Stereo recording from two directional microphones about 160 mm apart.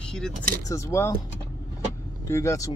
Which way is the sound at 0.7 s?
20° left (ahead or behind).